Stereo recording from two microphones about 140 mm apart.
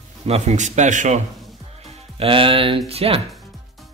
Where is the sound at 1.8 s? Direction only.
40° right (ahead or behind).